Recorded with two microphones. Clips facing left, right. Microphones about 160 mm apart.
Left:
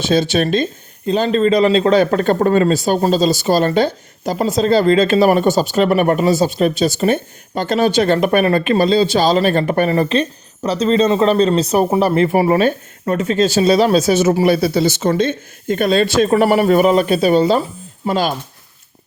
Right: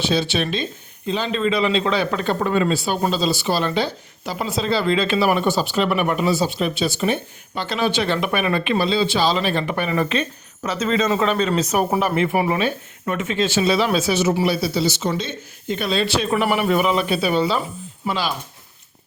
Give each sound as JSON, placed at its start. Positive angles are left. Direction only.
{"t": 0.0, "sound": "speech", "side_deg": 45}